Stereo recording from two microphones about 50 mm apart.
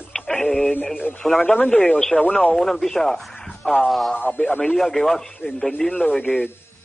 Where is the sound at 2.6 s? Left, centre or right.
Centre.